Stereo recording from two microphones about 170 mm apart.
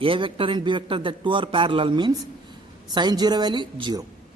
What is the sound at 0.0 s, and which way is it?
A man's voice, 30° right (ahead or behind).